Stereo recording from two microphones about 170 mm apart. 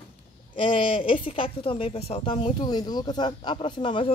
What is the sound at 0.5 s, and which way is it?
Speech, 30° left (ahead or behind).